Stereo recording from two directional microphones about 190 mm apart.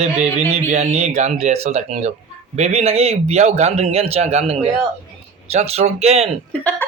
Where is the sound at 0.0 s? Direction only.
35° right (ahead or behind).